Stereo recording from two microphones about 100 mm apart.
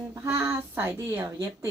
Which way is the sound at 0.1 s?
25° right (ahead or behind).